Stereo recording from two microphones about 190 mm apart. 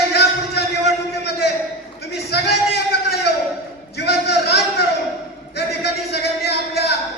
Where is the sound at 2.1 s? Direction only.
60° left (ahead or behind).